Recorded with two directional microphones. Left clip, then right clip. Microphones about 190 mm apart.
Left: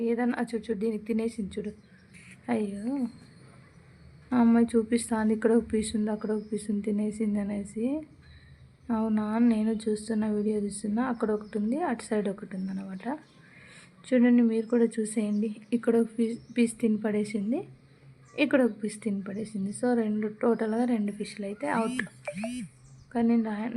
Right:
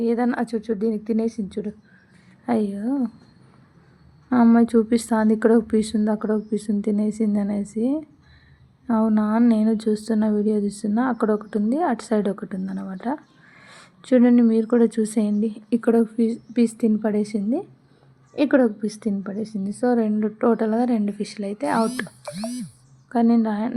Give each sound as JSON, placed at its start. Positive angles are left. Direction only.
{"t": 0.0, "sound": "a woman's voice", "side_deg": -20}
{"t": 4.3, "sound": "speech", "side_deg": -15}